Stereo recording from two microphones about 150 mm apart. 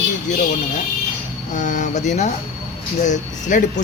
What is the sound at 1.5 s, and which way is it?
A man's voice, 55° left (ahead or behind).